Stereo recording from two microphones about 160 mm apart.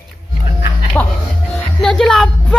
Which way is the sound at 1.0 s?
15° left (ahead or behind).